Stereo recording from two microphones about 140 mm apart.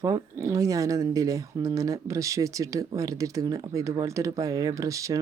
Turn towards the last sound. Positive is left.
turn(degrees=-25)  # may be behind; listen again after turning